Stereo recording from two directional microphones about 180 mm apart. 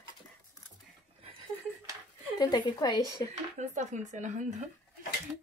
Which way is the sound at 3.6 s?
45° right (ahead or behind).